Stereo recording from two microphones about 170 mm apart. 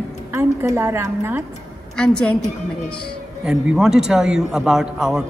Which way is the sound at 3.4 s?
5° right (ahead or behind).